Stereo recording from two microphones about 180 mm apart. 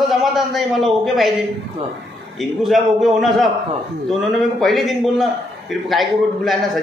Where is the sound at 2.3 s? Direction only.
Centre (ahead or behind).